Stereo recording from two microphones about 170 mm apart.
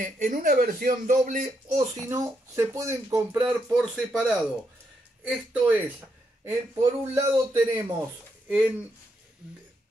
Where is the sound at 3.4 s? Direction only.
5° right (ahead or behind).